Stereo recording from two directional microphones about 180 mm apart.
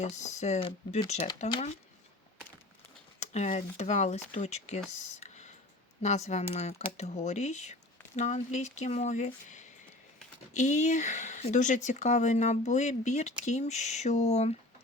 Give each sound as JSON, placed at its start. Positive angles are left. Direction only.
{"t": 0.0, "sound": "speech", "side_deg": 40}
{"t": 3.2, "sound": "speech", "side_deg": 40}
{"t": 4.9, "sound": "computer keyboard", "side_deg": 40}
{"t": 6.0, "sound": "speech", "side_deg": 40}